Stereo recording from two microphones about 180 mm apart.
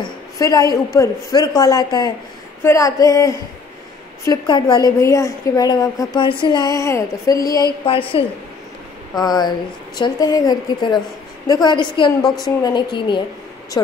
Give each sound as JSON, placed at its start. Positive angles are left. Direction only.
{"t": 0.0, "sound": "a sound", "side_deg": 20}
{"t": 0.9, "sound": "a woman's voice", "side_deg": 20}
{"t": 7.8, "sound": "a woman's voice", "side_deg": 30}